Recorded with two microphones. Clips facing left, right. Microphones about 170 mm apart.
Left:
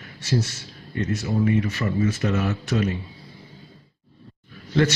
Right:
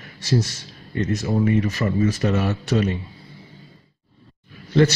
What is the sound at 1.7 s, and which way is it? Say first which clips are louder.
Speech: right 2 dB; 40° right (ahead or behind).